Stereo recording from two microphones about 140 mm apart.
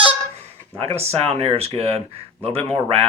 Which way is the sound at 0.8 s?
45° right (ahead or behind).